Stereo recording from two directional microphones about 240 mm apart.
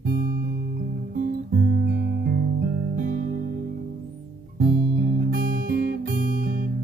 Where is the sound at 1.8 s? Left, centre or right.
Right.